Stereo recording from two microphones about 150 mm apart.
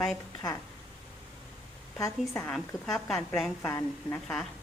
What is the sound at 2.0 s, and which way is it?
Speech, 20° left (ahead or behind).